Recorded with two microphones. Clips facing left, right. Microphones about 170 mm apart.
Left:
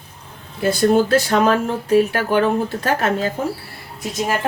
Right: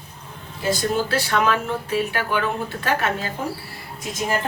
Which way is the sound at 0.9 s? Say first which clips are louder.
Left 7 dB; 45° left (ahead or behind).